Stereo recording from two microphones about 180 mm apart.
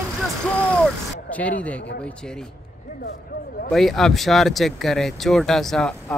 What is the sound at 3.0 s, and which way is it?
Speech, 55° left (ahead or behind).